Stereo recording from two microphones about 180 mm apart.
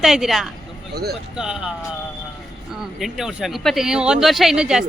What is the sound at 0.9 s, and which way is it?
Speech, 60° right (ahead or behind).